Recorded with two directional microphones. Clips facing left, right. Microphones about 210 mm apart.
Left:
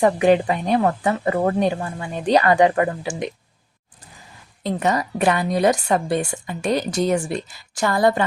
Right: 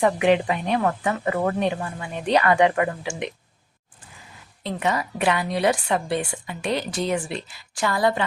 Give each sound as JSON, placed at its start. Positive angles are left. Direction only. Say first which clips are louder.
{"t": 0.0, "sound": "speech", "louder": "left 3 dB", "side_deg": 40}
{"t": 4.6, "sound": "a woman's voice", "louder": "left 4 dB", "side_deg": 40}